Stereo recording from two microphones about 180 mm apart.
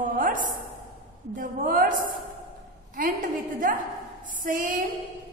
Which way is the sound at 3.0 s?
50° right (ahead or behind).